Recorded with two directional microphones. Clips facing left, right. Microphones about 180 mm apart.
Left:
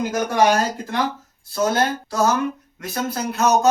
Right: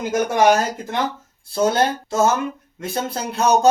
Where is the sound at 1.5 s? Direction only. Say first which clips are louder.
Right 2 dB; 25° right (ahead or behind).